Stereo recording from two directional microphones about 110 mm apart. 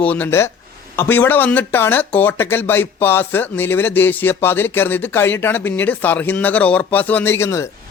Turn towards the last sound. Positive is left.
turn(degrees=25)  # may be behind; listen again after turning